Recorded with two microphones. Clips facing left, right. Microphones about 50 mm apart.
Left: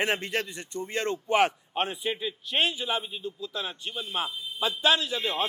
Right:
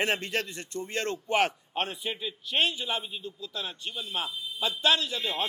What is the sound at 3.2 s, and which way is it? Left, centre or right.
Speech, left.